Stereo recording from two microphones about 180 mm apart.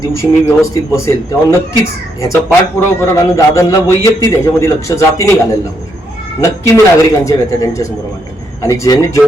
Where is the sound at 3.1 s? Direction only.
15° left (ahead or behind).